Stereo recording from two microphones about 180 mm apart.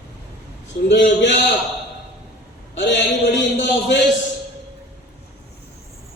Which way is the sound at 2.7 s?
80° left.